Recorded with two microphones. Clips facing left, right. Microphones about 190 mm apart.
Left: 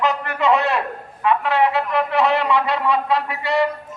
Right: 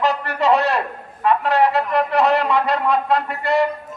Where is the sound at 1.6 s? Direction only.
Centre (ahead or behind).